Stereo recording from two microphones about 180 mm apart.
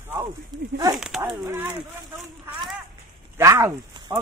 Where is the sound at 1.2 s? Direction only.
20° right (ahead or behind).